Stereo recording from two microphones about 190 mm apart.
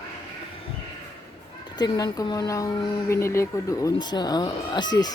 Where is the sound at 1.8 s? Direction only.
20° left (ahead or behind).